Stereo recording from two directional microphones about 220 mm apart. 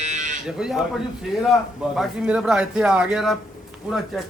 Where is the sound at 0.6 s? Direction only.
5° right (ahead or behind).